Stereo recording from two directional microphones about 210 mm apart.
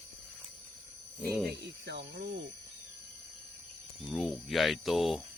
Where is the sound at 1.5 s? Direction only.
55° right (ahead or behind).